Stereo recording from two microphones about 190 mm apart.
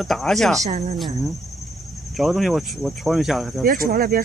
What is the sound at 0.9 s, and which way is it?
Speech, centre (ahead or behind).